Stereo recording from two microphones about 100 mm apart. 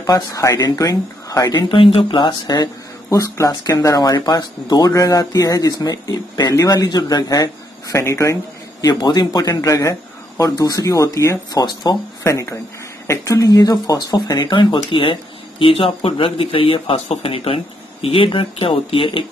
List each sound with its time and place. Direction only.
0.0 s speech: 35° left (ahead or behind)
1.8 s speech: 65° left (ahead or behind); by 8.4 s 30° left (ahead or behind)
8.8 s speech: 40° left (ahead or behind)
11.6 s speech: 45° left (ahead or behind)
12.2 s speech: 30° left (ahead or behind); by 15.1 s 60° left (ahead or behind)
15.6 s speech: 70° left (ahead or behind)